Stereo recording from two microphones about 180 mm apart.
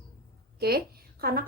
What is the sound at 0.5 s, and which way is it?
Speech, 60° right (ahead or behind).